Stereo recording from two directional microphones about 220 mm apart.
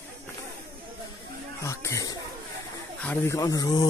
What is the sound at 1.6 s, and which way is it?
Speech, 15° left (ahead or behind).